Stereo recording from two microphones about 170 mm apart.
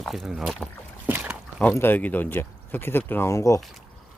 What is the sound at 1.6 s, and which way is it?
Speech, 10° left (ahead or behind).